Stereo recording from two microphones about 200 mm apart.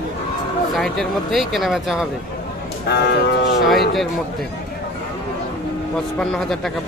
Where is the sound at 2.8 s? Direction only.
55° left (ahead or behind).